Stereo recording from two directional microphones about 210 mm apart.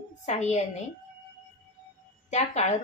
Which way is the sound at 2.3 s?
35° left (ahead or behind).